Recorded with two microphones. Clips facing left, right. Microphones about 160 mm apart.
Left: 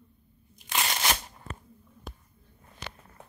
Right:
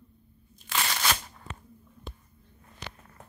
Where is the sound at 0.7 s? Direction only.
20° left (ahead or behind).